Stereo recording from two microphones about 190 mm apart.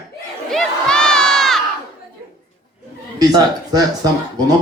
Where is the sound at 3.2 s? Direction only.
20° right (ahead or behind).